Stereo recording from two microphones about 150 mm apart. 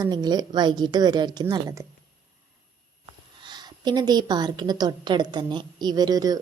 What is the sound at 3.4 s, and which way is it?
A woman's voice, 30° right (ahead or behind).